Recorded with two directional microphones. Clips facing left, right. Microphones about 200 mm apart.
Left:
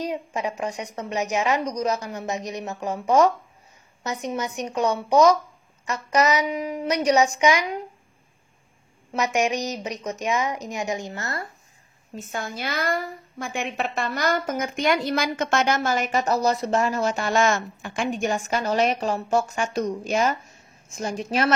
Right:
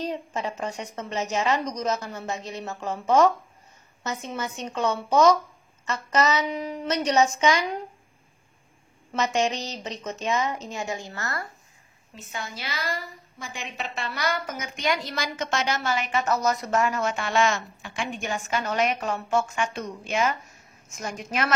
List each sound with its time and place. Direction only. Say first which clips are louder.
0.0 s a woman's voice: left 2 dB; 15° left (ahead or behind)
9.1 s a woman's voice: left 2 dB; 15° left (ahead or behind)
12.2 s a woman's voice: left 5 dB; 50° left (ahead or behind); by 21.5 s 30° left (ahead or behind)